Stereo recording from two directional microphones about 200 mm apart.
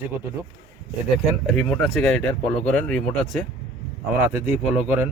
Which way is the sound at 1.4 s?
Centre (ahead or behind).